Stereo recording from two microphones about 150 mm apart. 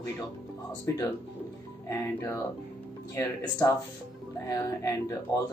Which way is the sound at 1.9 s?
20° left (ahead or behind).